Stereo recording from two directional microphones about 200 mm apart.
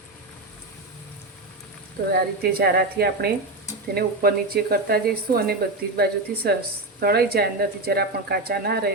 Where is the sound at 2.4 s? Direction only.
50° right (ahead or behind).